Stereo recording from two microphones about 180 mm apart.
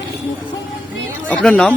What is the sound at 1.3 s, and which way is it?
Speech, 5° left (ahead or behind).